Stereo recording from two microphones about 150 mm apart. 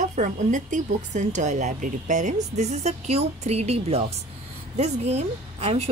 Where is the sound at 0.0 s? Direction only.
55° right (ahead or behind).